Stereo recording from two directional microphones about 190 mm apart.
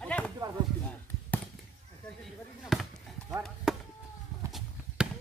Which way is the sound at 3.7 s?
5° right (ahead or behind).